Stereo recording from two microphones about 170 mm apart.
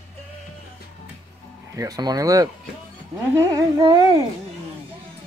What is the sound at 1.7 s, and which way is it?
Speech, 20° right (ahead or behind).